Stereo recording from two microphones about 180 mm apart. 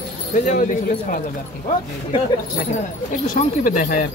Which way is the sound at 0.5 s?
50° left (ahead or behind).